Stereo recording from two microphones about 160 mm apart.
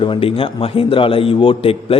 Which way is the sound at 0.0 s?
35° left (ahead or behind).